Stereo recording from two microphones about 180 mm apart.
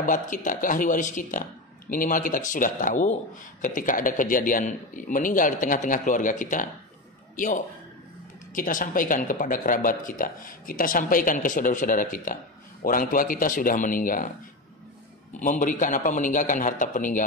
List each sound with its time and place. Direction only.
0.0 s speech: 45° left (ahead or behind)
15.3 s speech: 45° left (ahead or behind)